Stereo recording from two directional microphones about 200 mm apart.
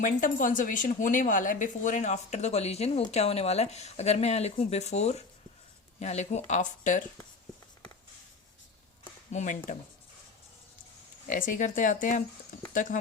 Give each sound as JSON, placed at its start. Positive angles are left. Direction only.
{"t": 0.0, "sound": "speech", "side_deg": 40}
{"t": 9.3, "sound": "speech", "side_deg": 40}
{"t": 11.3, "sound": "speech", "side_deg": 40}